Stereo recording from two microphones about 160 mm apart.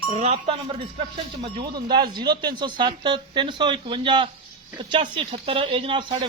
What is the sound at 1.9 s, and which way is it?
Speech, 25° right (ahead or behind).